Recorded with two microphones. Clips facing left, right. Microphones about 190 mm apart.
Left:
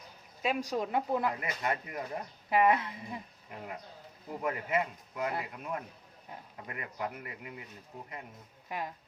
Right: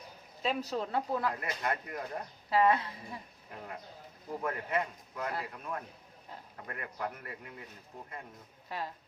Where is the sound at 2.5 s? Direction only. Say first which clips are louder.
Left 1 dB; 20° left (ahead or behind).